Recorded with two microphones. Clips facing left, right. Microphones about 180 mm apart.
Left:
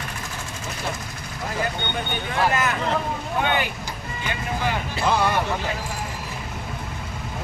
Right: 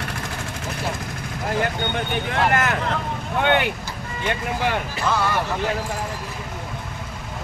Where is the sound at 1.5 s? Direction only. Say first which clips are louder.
Right 4 dB; 70° right (ahead or behind).